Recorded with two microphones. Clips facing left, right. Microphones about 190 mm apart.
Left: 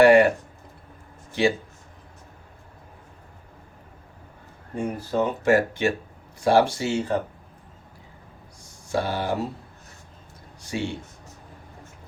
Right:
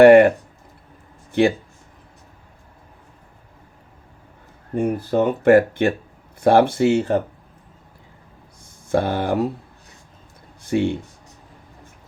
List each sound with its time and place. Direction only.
0.0 s a sound: 55° right (ahead or behind)
1.3 s speech: 55° right (ahead or behind)
4.7 s speech: 55° right (ahead or behind)
8.9 s speech: 55° right (ahead or behind)
10.6 s speech: 55° right (ahead or behind)